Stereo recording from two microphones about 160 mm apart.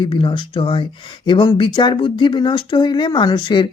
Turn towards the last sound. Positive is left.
turn(degrees=30)  # may be behind; listen again after turning